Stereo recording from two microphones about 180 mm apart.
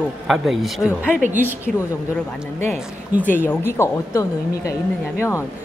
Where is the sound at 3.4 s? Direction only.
10° left (ahead or behind).